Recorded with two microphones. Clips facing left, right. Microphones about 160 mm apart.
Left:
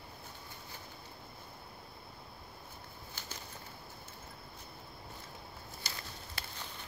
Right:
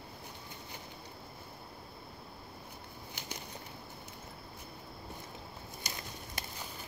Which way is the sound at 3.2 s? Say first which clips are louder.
Right 4 dB; 15° right (ahead or behind).